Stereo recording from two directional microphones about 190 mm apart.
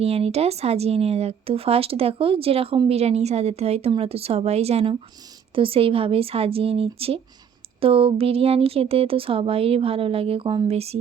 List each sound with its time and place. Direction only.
0.0 s speech: 30° right (ahead or behind)